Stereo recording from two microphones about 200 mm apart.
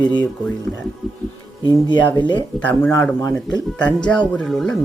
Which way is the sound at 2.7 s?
10° left (ahead or behind).